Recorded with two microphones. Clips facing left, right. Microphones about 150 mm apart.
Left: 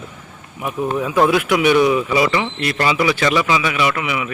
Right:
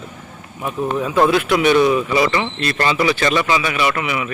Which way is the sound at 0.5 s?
15° left (ahead or behind).